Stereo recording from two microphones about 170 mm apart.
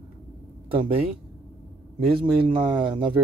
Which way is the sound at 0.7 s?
30° right (ahead or behind).